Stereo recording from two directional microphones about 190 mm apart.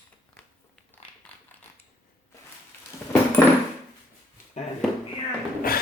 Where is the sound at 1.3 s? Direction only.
10° left (ahead or behind).